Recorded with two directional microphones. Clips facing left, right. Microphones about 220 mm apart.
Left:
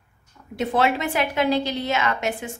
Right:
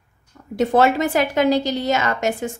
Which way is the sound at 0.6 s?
45° right (ahead or behind).